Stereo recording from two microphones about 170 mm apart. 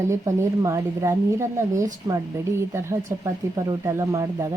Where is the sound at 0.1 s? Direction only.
20° right (ahead or behind).